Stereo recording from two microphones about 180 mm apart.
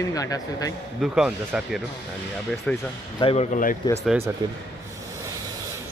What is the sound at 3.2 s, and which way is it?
Speech, 30° left (ahead or behind).